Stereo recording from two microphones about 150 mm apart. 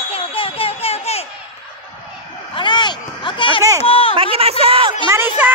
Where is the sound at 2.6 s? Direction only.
30° left (ahead or behind).